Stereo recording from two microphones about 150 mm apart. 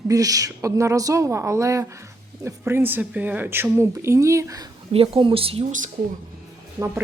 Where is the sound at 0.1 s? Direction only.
25° right (ahead or behind).